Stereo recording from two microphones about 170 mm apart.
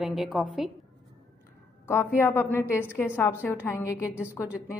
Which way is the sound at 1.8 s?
10° left (ahead or behind).